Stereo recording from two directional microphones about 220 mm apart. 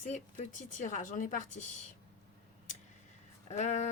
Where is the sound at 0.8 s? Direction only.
35° left (ahead or behind).